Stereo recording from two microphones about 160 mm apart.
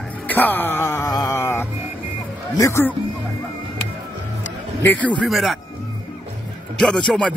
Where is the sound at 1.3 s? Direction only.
15° left (ahead or behind).